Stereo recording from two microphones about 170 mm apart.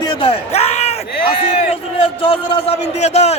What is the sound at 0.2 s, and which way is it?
A man's voice, 35° left (ahead or behind).